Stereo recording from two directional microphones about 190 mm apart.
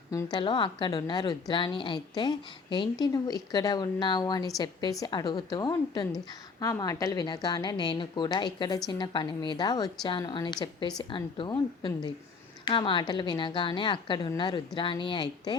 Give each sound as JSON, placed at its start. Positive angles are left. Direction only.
{"t": 0.1, "sound": "a woman's voice", "side_deg": 20}